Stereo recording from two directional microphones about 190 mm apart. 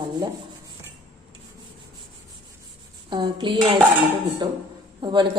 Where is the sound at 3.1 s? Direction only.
25° right (ahead or behind).